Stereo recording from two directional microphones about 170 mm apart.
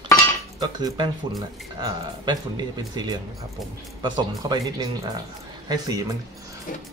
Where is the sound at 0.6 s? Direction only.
25° right (ahead or behind).